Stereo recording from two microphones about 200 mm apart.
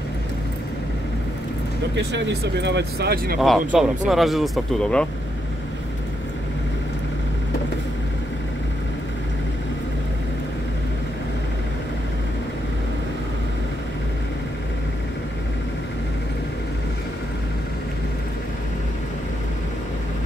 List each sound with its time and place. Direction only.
2.0 s speech: 60° right (ahead or behind)
3.3 s speech: centre (ahead or behind)